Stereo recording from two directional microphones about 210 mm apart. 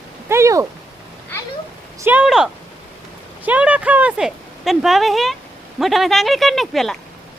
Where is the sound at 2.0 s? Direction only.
5° right (ahead or behind).